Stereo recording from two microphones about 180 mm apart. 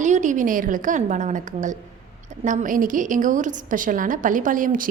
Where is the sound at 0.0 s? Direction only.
45° right (ahead or behind).